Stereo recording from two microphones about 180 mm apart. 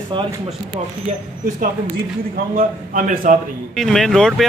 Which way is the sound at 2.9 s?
45° right (ahead or behind).